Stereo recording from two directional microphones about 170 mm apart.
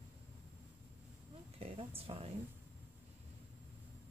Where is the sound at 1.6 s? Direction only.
35° right (ahead or behind).